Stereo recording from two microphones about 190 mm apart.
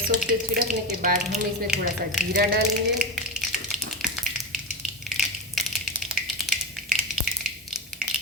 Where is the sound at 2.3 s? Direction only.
55° right (ahead or behind).